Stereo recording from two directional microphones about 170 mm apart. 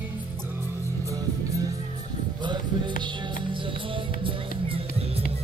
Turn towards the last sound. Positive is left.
turn(degrees=-35)  # may be behind; listen again after turning